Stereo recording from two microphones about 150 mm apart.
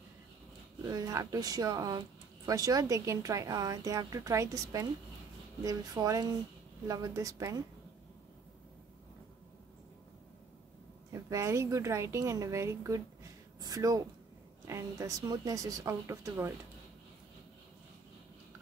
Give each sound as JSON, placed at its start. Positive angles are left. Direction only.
{"t": 0.8, "sound": "speech", "side_deg": -25}
{"t": 11.1, "sound": "a woman's voice", "side_deg": -20}